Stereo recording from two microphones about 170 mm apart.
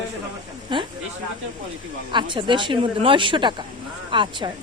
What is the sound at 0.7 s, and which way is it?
Speech, 30° right (ahead or behind).